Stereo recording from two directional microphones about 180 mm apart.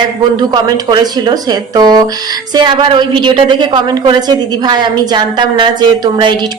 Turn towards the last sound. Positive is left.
turn(degrees=-25)  # may be behind; listen again after turning